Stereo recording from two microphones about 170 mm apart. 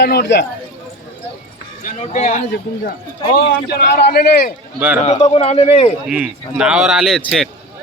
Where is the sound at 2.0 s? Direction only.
45° left (ahead or behind).